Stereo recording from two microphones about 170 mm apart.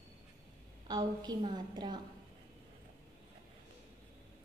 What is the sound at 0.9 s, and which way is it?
A woman's voice, 25° right (ahead or behind).